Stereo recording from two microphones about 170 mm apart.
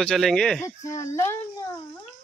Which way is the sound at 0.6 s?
20° left (ahead or behind).